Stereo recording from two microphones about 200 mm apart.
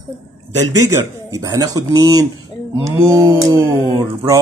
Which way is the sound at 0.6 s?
15° right (ahead or behind).